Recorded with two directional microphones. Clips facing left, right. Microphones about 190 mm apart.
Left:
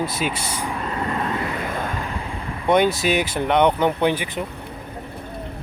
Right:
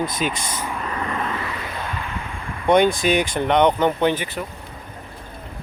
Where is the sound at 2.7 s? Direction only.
5° left (ahead or behind).